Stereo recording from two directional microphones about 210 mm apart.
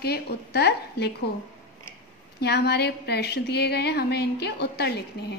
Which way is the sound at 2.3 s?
50° left (ahead or behind).